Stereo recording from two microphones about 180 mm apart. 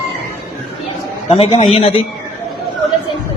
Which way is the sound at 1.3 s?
35° left (ahead or behind).